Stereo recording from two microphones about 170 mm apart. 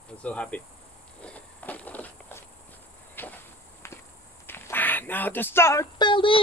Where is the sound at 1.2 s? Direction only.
10° left (ahead or behind).